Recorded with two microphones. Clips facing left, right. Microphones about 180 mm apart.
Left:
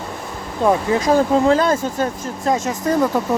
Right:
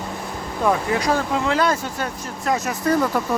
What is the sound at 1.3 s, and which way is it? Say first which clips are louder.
Speech: left 6 dB; 40° left (ahead or behind).